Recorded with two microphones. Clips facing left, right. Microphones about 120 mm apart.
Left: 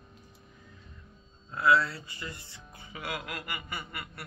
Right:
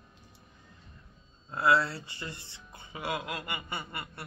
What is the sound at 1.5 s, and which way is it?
Speech, 30° right (ahead or behind).